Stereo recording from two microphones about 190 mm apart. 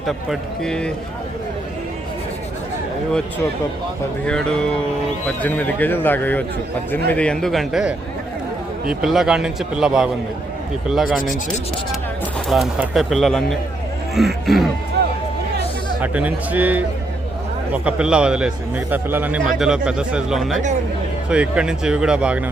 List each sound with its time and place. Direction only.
0.0 s a man's voice: centre (ahead or behind)
4.3 s a man's voice: 5° left (ahead or behind)
11.2 s speech: 45° left (ahead or behind)
12.5 s a man's voice: centre (ahead or behind)
16.0 s speech: 10° right (ahead or behind)
17.8 s a man's voice: 5° right (ahead or behind)